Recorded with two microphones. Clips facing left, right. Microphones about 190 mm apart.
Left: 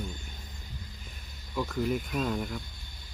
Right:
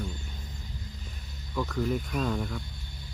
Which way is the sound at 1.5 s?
5° left (ahead or behind).